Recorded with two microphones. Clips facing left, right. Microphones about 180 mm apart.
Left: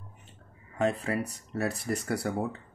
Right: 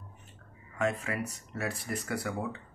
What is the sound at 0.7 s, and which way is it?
Speech, 35° left (ahead or behind).